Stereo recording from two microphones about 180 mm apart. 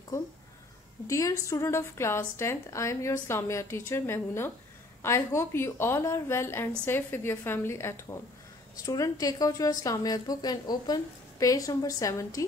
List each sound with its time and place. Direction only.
1.0 s a woman's voice: 15° left (ahead or behind)